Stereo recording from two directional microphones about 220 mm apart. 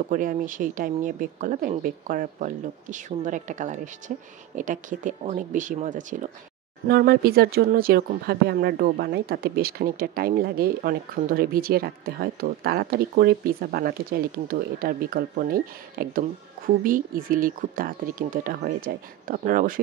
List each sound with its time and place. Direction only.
0.1 s speech: 35° right (ahead or behind)